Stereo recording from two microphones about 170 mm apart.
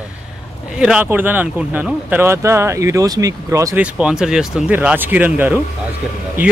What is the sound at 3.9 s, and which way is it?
Speech, 5° right (ahead or behind).